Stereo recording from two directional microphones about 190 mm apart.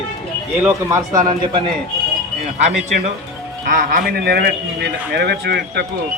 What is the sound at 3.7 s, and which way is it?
Speech, 50° right (ahead or behind).